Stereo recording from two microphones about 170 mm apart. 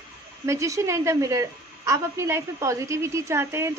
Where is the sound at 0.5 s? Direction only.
20° right (ahead or behind).